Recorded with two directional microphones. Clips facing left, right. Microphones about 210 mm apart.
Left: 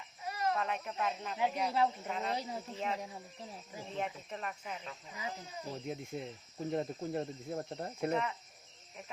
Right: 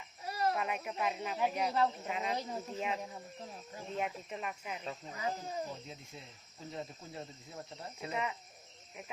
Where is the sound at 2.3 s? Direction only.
10° left (ahead or behind).